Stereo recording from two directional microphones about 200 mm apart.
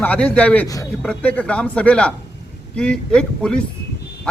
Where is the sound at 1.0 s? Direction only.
5° left (ahead or behind).